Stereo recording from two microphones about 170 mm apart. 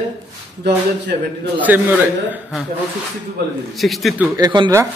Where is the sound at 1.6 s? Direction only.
10° right (ahead or behind).